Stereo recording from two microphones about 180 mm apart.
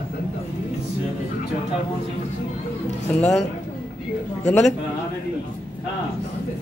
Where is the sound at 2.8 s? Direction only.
40° left (ahead or behind).